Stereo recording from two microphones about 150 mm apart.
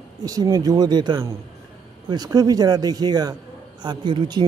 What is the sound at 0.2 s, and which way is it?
A man's voice, 25° right (ahead or behind).